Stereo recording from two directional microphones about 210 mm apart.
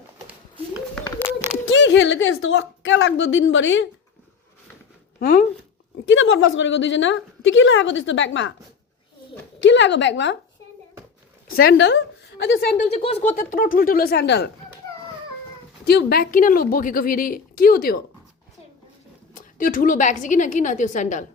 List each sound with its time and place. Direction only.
0.3 s a sound: 5° right (ahead or behind)
1.6 s a woman's voice: 60° left (ahead or behind)
5.2 s a woman's voice: 40° left (ahead or behind)
6.1 s a woman's voice: 65° left (ahead or behind)
9.6 s a woman's voice: 60° left (ahead or behind)
11.5 s a woman's voice: 50° left (ahead or behind)
15.9 s a woman's voice: 50° left (ahead or behind)
19.3 s a woman's voice: 40° left (ahead or behind)